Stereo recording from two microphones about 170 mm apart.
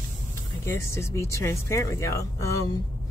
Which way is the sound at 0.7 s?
15° left (ahead or behind).